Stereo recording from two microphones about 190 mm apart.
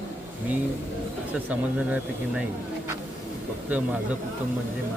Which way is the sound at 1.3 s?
10° right (ahead or behind).